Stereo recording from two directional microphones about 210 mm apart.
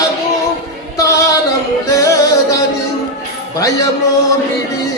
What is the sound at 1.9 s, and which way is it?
Music, 15° left (ahead or behind).